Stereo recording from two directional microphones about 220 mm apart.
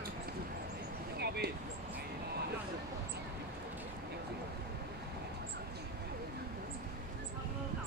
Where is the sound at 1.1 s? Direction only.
45° right (ahead or behind).